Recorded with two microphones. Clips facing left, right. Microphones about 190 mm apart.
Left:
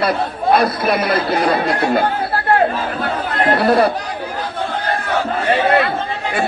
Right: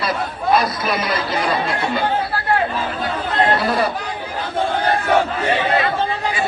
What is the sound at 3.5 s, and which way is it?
Speech, 65° left (ahead or behind).